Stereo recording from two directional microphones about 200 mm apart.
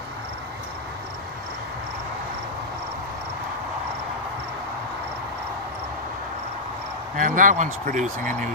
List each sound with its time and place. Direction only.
7.2 s speech: 40° right (ahead or behind)